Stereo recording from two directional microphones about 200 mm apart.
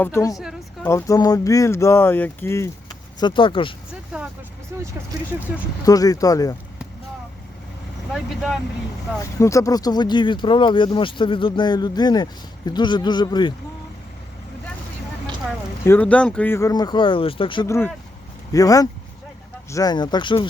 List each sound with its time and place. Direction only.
0.0 s speech: 15° left (ahead or behind)
0.3 s a sound: centre (ahead or behind)
0.9 s speech: 15° left (ahead or behind)
3.2 s speech: 25° left (ahead or behind)
4.1 s speech: 5° right (ahead or behind)
5.8 s speech: 20° left (ahead or behind)
8.1 s speech: centre (ahead or behind)
9.1 s speech: 15° left (ahead or behind)
15.8 s speech: 10° left (ahead or behind); by 17.7 s 25° left (ahead or behind)
17.7 s speech: 10° left (ahead or behind)